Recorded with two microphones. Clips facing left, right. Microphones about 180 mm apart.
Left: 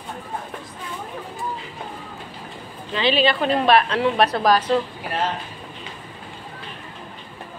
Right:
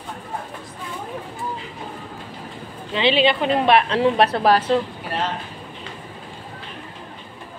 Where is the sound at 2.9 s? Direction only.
25° right (ahead or behind).